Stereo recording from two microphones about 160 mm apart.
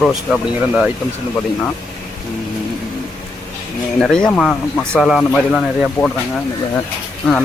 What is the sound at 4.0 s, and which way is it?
Speech, 5° left (ahead or behind).